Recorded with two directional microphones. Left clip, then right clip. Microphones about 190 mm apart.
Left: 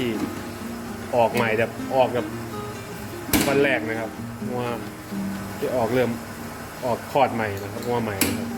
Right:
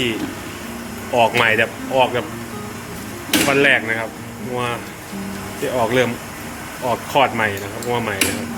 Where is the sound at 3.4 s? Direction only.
10° left (ahead or behind).